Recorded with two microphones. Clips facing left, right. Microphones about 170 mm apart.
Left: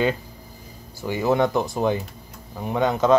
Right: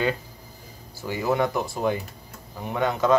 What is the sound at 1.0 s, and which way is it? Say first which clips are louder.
Speech: left 3 dB; 20° left (ahead or behind).